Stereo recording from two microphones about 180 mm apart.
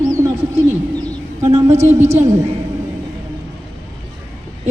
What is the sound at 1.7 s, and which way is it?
Speech, 40° right (ahead or behind).